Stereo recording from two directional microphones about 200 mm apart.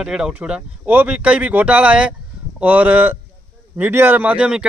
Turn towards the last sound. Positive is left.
turn(degrees=-5)  # may be behind; listen again after turning